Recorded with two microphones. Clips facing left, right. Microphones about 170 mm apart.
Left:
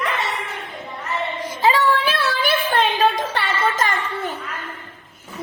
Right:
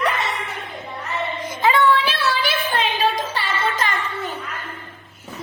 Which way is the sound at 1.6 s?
40° left (ahead or behind).